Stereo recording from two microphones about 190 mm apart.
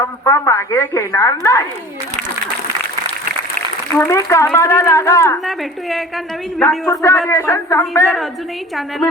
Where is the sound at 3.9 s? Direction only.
10° left (ahead or behind).